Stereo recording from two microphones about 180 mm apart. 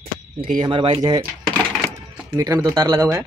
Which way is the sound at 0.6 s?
30° right (ahead or behind).